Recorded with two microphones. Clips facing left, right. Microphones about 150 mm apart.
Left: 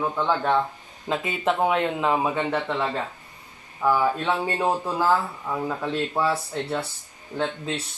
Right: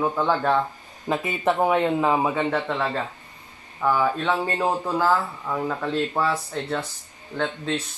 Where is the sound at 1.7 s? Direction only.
15° right (ahead or behind).